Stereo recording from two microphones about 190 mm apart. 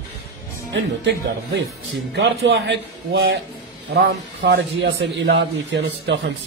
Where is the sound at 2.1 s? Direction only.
70° right (ahead or behind).